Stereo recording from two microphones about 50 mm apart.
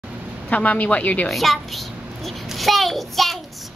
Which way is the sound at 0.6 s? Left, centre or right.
Left.